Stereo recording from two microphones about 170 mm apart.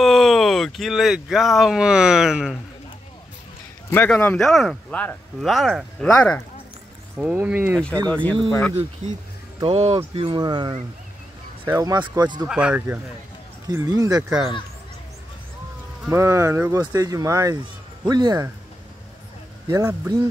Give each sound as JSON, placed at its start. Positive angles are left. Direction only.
{"t": 0.0, "sound": "speech", "side_deg": 0}
{"t": 3.9, "sound": "speech", "side_deg": 10}
{"t": 7.2, "sound": "speech", "side_deg": -5}
{"t": 7.7, "sound": "speech", "side_deg": 5}
{"t": 9.6, "sound": "speech", "side_deg": -35}
{"t": 12.4, "sound": "speech", "side_deg": -5}
{"t": 13.7, "sound": "speech", "side_deg": -20}
{"t": 16.1, "sound": "speech", "side_deg": -15}
{"t": 19.7, "sound": "speech", "side_deg": -15}